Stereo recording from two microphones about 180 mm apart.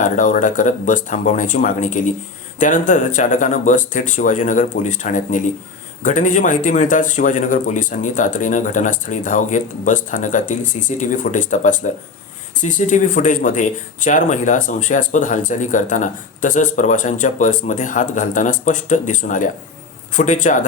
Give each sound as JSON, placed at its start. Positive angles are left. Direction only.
{"t": 0.0, "sound": "speech", "side_deg": 45}